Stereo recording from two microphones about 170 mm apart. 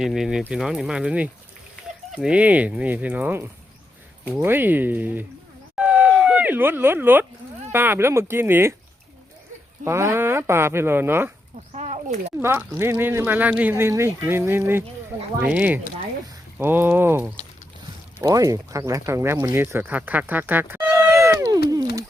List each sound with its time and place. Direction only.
0.0 s speech: centre (ahead or behind)
5.7 s a sound: 5° right (ahead or behind)
7.7 s speech: 15° right (ahead or behind)
9.8 s speech: 15° right (ahead or behind)
11.7 s a sound: 40° right (ahead or behind)
12.4 s speech: 15° right (ahead or behind)